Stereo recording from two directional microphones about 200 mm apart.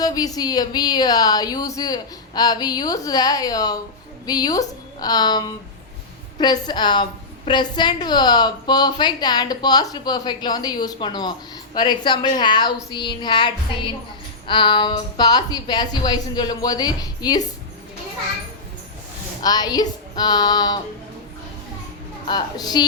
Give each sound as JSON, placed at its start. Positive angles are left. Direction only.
{"t": 0.0, "sound": "a woman's voice", "side_deg": 20}
{"t": 6.4, "sound": "a woman's voice", "side_deg": 20}
{"t": 19.4, "sound": "a woman's voice", "side_deg": 20}
{"t": 22.3, "sound": "a woman's voice", "side_deg": 20}